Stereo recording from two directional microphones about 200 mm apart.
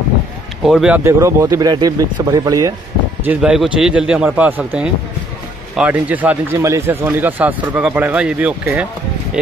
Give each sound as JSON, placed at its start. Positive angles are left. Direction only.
{"t": 0.7, "sound": "speech", "side_deg": -5}
{"t": 3.3, "sound": "speech", "side_deg": -5}